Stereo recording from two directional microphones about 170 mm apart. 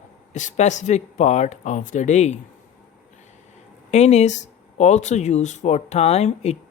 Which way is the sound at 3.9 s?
40° left (ahead or behind).